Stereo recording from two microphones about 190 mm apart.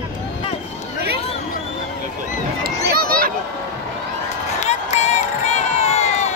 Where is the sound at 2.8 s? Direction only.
50° right (ahead or behind).